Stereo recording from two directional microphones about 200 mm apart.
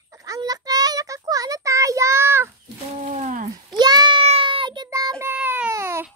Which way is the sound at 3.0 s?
35° right (ahead or behind).